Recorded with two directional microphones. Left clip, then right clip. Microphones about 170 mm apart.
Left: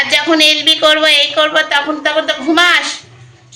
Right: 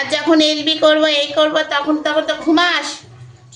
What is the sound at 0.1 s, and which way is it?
A woman's voice, 20° right (ahead or behind).